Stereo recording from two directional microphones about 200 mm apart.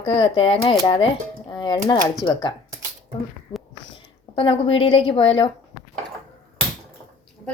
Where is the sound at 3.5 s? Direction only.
25° left (ahead or behind).